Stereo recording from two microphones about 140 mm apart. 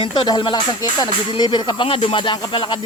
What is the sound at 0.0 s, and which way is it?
A man's voice, 35° left (ahead or behind).